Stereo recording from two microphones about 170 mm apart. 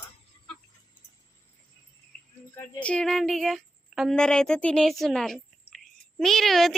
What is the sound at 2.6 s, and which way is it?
A woman's voice, 5° left (ahead or behind).